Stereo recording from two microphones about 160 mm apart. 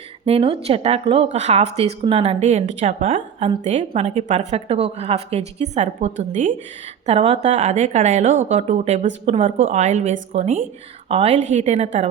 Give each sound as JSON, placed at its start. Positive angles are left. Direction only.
{"t": 0.3, "sound": "a woman's voice", "side_deg": -40}
{"t": 7.0, "sound": "a woman's voice", "side_deg": -40}